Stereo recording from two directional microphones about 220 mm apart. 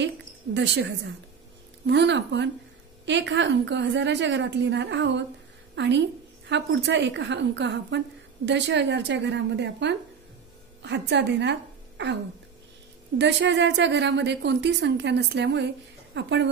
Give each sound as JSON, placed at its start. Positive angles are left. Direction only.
{"t": 0.0, "sound": "a woman's voice", "side_deg": -55}
{"t": 13.2, "sound": "a woman's voice", "side_deg": -55}